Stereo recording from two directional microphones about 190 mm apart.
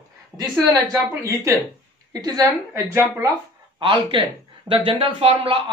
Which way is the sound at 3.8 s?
25° right (ahead or behind).